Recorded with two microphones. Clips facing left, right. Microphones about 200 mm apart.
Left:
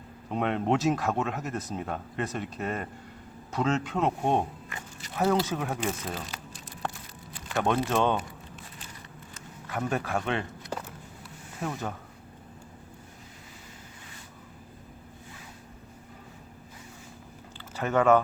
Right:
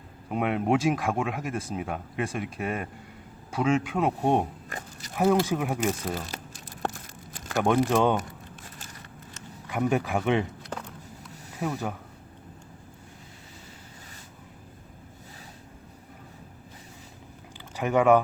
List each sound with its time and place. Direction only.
0.3 s speech: 10° right (ahead or behind)
4.7 s biting: 40° right (ahead or behind)
5.1 s speech: 10° right (ahead or behind)
6.3 s a sound: 45° right (ahead or behind)
7.6 s speech: 15° right (ahead or behind)
9.6 s speech: 15° right (ahead or behind)
10.7 s a sound: 5° left (ahead or behind)
11.6 s speech: 10° right (ahead or behind)
17.7 s speech: 10° right (ahead or behind)